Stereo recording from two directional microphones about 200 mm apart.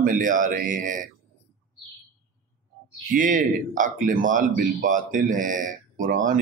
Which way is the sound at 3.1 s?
40° right (ahead or behind).